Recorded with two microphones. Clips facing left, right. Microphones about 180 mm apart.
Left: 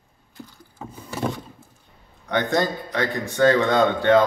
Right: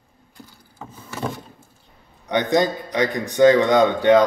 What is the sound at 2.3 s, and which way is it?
A man's voice, 20° right (ahead or behind).